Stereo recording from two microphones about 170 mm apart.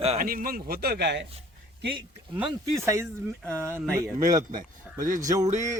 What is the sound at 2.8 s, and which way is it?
Speech, 15° right (ahead or behind).